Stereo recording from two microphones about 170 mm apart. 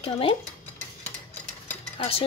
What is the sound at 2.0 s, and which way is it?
Speech, 35° left (ahead or behind).